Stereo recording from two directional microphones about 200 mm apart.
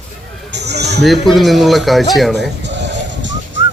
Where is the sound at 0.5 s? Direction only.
55° right (ahead or behind).